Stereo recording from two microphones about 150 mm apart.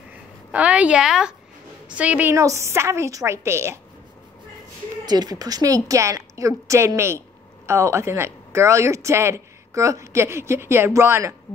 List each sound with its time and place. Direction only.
0.5 s a woman's voice: 10° right (ahead or behind)
2.3 s a woman's voice: 20° right (ahead or behind)
5.0 s speech: 25° right (ahead or behind)